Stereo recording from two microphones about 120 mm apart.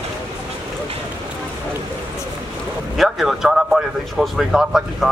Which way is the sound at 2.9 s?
Centre (ahead or behind).